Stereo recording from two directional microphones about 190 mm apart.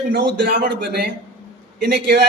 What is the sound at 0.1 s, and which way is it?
A man's voice, 50° right (ahead or behind).